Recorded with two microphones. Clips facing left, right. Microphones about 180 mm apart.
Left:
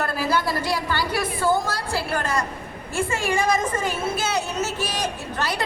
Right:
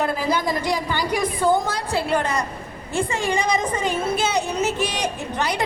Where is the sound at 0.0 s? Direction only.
15° right (ahead or behind).